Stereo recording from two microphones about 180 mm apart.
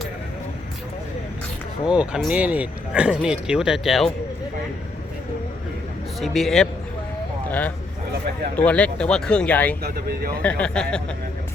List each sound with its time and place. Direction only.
1.9 s speech: 5° right (ahead or behind)
6.1 s speech: centre (ahead or behind)
7.4 s a sound: 10° left (ahead or behind)
8.5 s speech: 5° left (ahead or behind)
9.8 s speech: 55° right (ahead or behind)
10.4 s speech: 5° left (ahead or behind)